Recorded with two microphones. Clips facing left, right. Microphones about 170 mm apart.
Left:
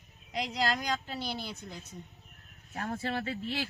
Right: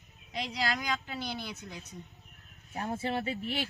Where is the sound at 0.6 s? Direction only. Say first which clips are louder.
Left 2 dB; 45° left (ahead or behind).